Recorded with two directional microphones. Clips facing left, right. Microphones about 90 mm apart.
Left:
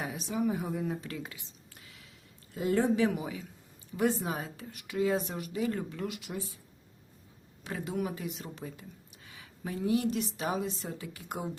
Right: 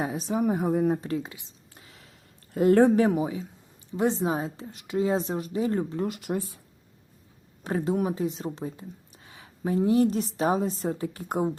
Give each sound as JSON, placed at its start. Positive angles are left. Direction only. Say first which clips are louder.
{"t": 0.0, "sound": "speech", "louder": "right 6 dB", "side_deg": -35}
{"t": 1.0, "sound": "a sound", "louder": "right 9 dB", "side_deg": -25}
{"t": 2.5, "sound": "speech", "louder": "right 9 dB", "side_deg": -55}
{"t": 3.0, "sound": "speech", "louder": "right 6 dB", "side_deg": -30}
{"t": 6.1, "sound": "speech", "louder": "right 9 dB", "side_deg": -50}
{"t": 7.6, "sound": "speech", "louder": "right 8 dB", "side_deg": -35}